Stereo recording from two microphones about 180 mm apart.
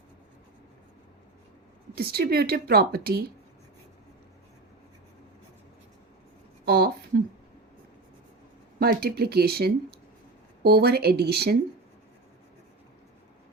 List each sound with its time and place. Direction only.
2.0 s speech: 60° right (ahead or behind)
6.7 s a sound: 60° right (ahead or behind)
8.8 s speech: 60° right (ahead or behind)